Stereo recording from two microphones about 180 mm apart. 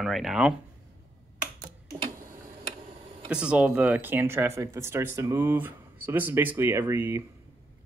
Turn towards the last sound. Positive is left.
turn(degrees=-15)  # may be behind; listen again after turning